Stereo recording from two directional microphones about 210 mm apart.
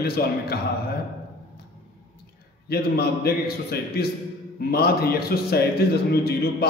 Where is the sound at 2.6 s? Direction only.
50° left (ahead or behind).